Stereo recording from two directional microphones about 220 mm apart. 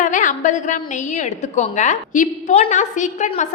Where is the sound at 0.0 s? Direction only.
35° left (ahead or behind).